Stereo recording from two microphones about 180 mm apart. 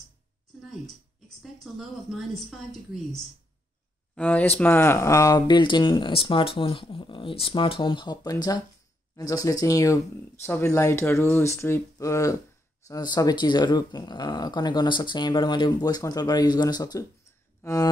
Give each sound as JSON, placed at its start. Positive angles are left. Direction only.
{"t": 1.4, "sound": "a woman's voice", "side_deg": 0}
{"t": 17.6, "sound": "music", "side_deg": 15}